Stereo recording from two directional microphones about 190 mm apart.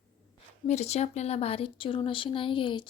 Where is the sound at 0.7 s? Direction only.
35° left (ahead or behind).